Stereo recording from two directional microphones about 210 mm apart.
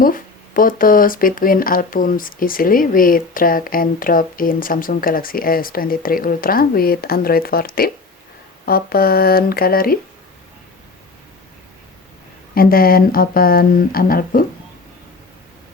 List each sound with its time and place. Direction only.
0.0 s speech: 40° left (ahead or behind)
12.5 s speech: 45° left (ahead or behind)